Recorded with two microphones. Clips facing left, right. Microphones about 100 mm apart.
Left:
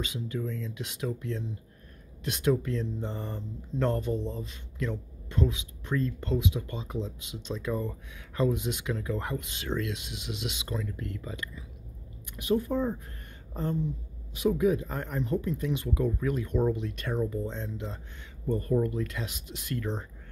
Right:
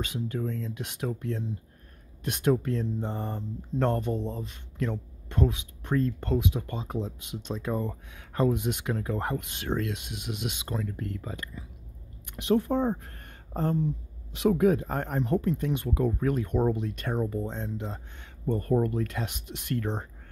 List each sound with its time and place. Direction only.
0.0 s speech: 45° right (ahead or behind)
12.4 s speech: 75° right (ahead or behind)
13.0 s a sound: 40° right (ahead or behind)
14.5 s speech: 55° right (ahead or behind)